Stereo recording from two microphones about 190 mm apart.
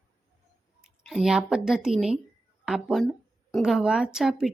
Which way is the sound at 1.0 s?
Centre (ahead or behind).